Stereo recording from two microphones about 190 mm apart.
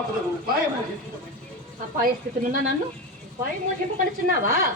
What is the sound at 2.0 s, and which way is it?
Speech, 45° right (ahead or behind).